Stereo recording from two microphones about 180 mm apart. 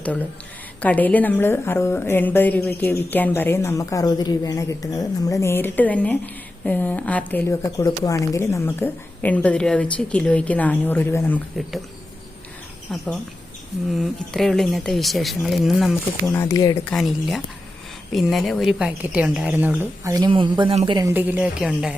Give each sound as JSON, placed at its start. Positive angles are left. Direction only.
{"t": 0.8, "sound": "a woman's voice", "side_deg": 10}
{"t": 12.9, "sound": "speech", "side_deg": 5}
{"t": 16.3, "sound": "speech", "side_deg": 15}
{"t": 16.8, "sound": "a woman's voice", "side_deg": 5}
{"t": 21.0, "sound": "a woman's voice", "side_deg": -10}